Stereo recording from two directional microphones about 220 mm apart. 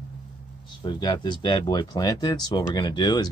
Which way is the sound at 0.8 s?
20° left (ahead or behind).